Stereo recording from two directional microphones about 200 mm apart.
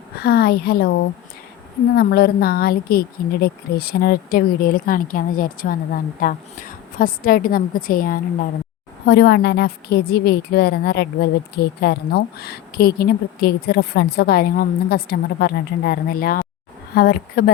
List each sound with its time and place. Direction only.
0.2 s a woman's voice: 50° left (ahead or behind)
2.0 s a woman's voice: 50° left (ahead or behind)
9.0 s a woman's voice: 55° left (ahead or behind)